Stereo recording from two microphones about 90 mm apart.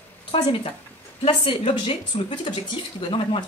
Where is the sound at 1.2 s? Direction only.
90° left.